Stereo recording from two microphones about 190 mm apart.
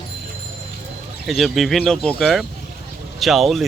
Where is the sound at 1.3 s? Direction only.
Centre (ahead or behind).